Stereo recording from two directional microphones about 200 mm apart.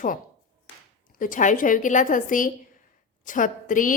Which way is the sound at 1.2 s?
40° left (ahead or behind).